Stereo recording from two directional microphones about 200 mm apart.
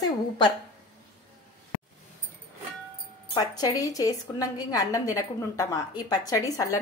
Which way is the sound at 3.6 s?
20° left (ahead or behind).